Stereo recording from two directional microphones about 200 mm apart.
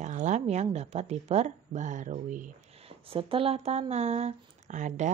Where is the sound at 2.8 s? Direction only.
25° right (ahead or behind).